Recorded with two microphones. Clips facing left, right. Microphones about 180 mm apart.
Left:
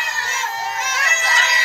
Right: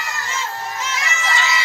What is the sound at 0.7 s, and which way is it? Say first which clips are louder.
Bagpipes: even; 45° left (ahead or behind).